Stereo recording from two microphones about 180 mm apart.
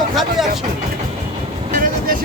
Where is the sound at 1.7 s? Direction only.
50° right (ahead or behind).